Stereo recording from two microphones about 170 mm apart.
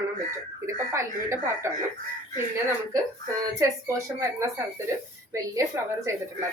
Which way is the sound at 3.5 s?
15° right (ahead or behind).